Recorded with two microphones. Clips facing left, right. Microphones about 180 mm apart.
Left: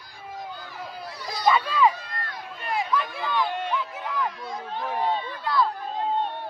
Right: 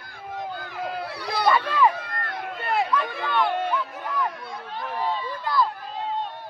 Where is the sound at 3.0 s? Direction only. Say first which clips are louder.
Right 2 dB; 60° right (ahead or behind).